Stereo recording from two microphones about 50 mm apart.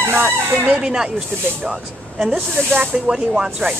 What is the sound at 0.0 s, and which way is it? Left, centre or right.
Speech, right.